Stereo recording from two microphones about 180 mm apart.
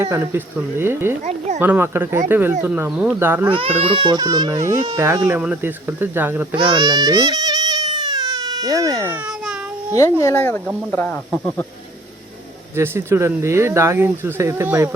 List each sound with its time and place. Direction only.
0.0 s speech: 15° right (ahead or behind)
3.5 s speech: 30° right (ahead or behind); by 6.6 s 10° right (ahead or behind)
6.6 s baby cry: 25° right (ahead or behind)
9.9 s speech: 15° left (ahead or behind)
12.7 s speech: 15° right (ahead or behind)